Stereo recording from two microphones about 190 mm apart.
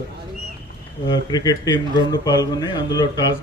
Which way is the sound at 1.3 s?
20° left (ahead or behind).